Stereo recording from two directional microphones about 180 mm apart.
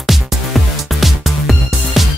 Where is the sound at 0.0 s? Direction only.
Centre (ahead or behind).